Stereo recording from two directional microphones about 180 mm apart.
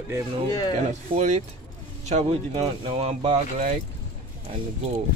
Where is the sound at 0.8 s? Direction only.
40° right (ahead or behind).